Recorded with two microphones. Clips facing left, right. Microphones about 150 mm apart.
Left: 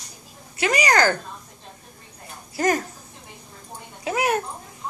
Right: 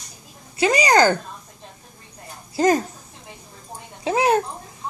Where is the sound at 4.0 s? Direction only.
25° right (ahead or behind).